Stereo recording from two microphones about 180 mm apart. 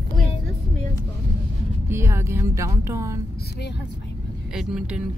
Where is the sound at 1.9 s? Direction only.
15° right (ahead or behind).